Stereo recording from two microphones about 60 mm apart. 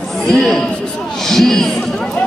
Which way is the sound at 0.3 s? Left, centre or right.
Centre.